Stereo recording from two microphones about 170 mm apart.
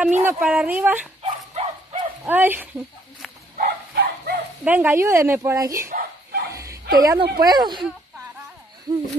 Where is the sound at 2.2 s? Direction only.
10° right (ahead or behind).